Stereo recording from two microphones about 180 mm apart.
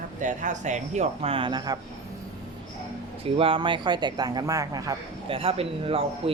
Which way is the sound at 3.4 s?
30° right (ahead or behind).